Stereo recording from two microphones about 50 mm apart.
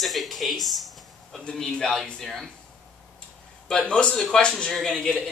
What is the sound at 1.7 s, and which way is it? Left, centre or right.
Speech, centre.